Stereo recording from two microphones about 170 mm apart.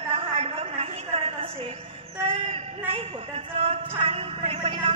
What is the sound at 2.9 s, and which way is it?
Speech, 35° right (ahead or behind).